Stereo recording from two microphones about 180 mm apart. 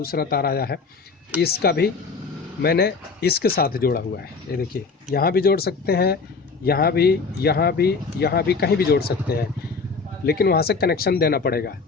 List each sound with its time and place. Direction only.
0.0 s speech: 55° left (ahead or behind)